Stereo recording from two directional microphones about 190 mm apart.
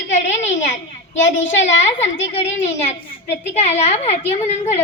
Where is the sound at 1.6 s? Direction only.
35° left (ahead or behind).